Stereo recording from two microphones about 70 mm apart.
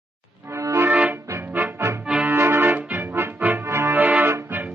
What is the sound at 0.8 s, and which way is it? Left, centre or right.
Accordion, right.